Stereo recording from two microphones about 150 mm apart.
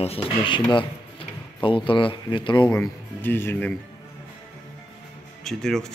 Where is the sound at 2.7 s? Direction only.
15° left (ahead or behind).